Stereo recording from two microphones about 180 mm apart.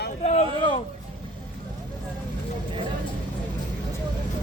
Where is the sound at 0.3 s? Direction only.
35° left (ahead or behind).